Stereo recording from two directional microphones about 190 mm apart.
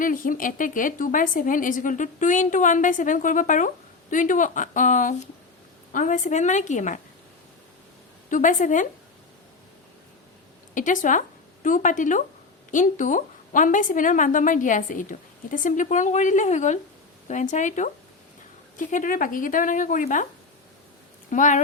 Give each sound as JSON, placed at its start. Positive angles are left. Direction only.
{"t": 0.0, "sound": "a woman's voice", "side_deg": 45}
{"t": 8.3, "sound": "a woman's voice", "side_deg": 45}
{"t": 10.8, "sound": "a woman's voice", "side_deg": 40}
{"t": 21.2, "sound": "speech", "side_deg": 40}